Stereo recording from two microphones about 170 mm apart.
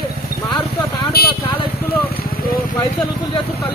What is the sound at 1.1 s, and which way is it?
Vehicle, 65° left (ahead or behind).